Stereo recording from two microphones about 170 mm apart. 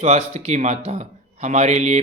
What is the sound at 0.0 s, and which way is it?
Speech, 40° right (ahead or behind).